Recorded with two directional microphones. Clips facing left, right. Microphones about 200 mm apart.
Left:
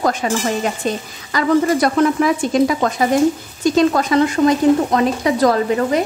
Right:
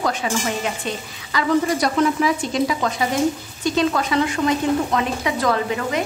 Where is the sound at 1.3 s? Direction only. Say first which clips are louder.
Left 4 dB; 50° left (ahead or behind).